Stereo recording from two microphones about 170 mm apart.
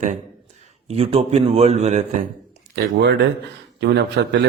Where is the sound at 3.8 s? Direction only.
85° right.